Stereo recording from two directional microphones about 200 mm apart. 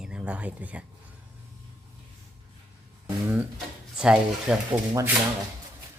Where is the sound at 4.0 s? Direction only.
5° right (ahead or behind).